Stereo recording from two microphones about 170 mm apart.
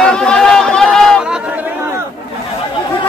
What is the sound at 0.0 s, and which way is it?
Chatter, 5° left (ahead or behind).